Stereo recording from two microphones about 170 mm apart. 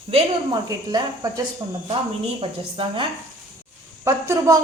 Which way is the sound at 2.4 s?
30° right (ahead or behind).